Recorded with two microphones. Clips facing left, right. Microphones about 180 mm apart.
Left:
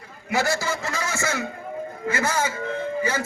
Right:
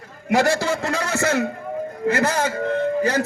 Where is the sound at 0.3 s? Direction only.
75° right (ahead or behind).